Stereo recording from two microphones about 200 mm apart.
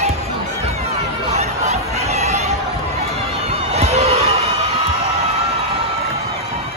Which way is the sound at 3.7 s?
30° right (ahead or behind).